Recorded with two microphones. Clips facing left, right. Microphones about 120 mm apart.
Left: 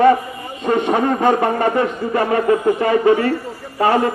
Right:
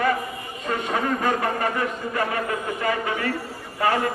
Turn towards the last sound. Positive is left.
turn(degrees=30)  # may be behind; listen again after turning